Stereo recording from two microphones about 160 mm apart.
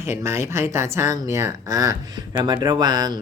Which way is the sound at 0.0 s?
15° right (ahead or behind).